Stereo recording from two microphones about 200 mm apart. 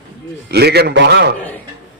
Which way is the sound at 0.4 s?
55° right (ahead or behind).